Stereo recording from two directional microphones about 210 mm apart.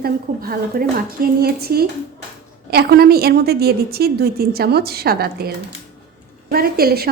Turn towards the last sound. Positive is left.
turn(degrees=-45)  # may be behind; listen again after turning